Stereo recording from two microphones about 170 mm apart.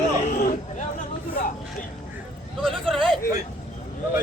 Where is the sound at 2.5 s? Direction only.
Centre (ahead or behind).